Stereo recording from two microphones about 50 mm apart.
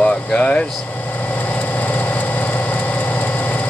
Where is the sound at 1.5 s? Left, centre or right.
Left.